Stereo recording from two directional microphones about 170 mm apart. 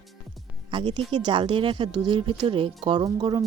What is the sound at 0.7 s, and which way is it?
Speech, 30° right (ahead or behind).